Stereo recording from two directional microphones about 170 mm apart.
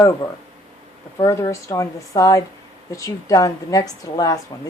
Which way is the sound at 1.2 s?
20° left (ahead or behind).